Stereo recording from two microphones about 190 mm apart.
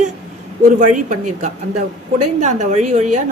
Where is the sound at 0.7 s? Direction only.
45° right (ahead or behind).